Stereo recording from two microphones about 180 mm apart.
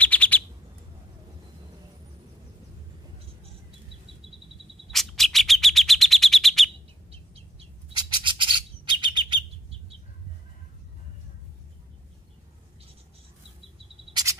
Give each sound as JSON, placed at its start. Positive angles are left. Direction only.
{"t": 0.0, "sound": "bird", "side_deg": 10}
{"t": 4.9, "sound": "bird", "side_deg": 0}
{"t": 7.1, "sound": "bird", "side_deg": -35}
{"t": 14.1, "sound": "cricket", "side_deg": -20}